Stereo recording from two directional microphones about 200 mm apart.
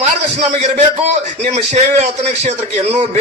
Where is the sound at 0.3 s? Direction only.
35° right (ahead or behind).